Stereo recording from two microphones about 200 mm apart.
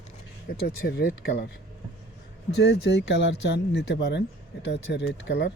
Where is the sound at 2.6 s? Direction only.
60° left (ahead or behind).